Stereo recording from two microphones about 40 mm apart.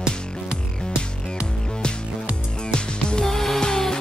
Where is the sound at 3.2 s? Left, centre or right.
Centre.